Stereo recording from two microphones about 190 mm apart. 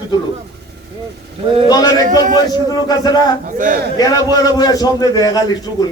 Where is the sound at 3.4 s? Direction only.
45° right (ahead or behind).